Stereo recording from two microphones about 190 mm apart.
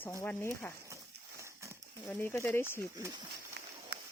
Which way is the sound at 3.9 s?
60° right (ahead or behind).